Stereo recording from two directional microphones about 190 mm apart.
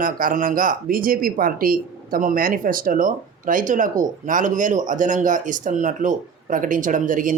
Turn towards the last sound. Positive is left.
turn(degrees=-45)  # may be behind; listen again after turning